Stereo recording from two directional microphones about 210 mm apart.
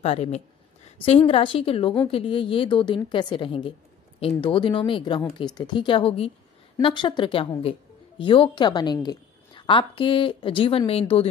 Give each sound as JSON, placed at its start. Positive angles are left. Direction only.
{"t": 0.0, "sound": "a woman's voice", "side_deg": 30}